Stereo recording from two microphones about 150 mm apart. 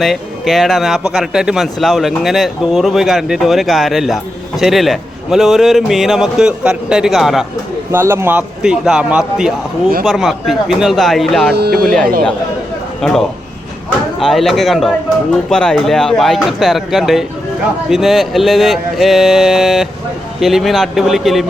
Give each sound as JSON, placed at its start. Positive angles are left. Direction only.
{"t": 0.0, "sound": "a man's voice", "side_deg": 0}
{"t": 7.9, "sound": "a man's voice", "side_deg": -15}
{"t": 11.5, "sound": "speech", "side_deg": -90}
{"t": 11.8, "sound": "a man's voice", "side_deg": 0}